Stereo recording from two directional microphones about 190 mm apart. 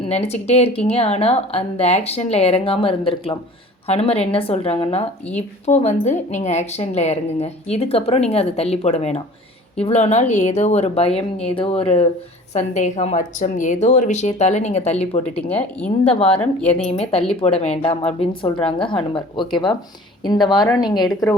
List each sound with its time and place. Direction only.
0.0 s speech: 35° left (ahead or behind)
16.4 s speech: 5° left (ahead or behind)
16.8 s speech: 30° left (ahead or behind)